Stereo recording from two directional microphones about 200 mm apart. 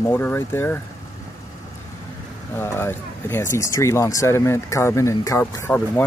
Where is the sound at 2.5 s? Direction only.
10° left (ahead or behind).